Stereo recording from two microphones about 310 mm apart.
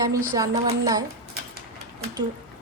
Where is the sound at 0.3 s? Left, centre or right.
Centre.